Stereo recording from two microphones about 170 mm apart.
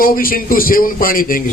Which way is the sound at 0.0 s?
55° left (ahead or behind).